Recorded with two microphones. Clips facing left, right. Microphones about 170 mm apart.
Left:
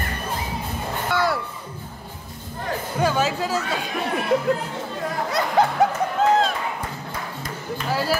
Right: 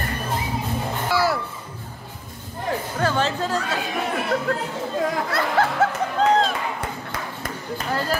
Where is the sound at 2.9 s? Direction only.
10° left (ahead or behind).